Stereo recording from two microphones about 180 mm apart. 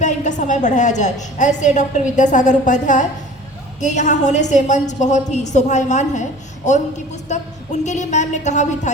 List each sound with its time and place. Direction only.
0.0 s a woman's voice: 45° left (ahead or behind)